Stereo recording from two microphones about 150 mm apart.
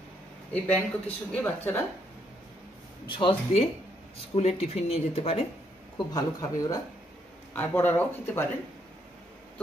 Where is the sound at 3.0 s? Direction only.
35° left (ahead or behind).